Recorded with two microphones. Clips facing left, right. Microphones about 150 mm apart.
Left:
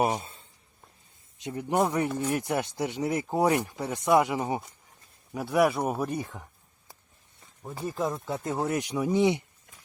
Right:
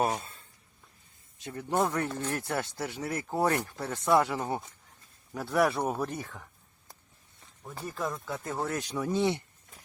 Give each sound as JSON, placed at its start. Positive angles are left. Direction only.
{"t": 0.0, "sound": "speech", "side_deg": 20}
{"t": 7.9, "sound": "speech", "side_deg": 20}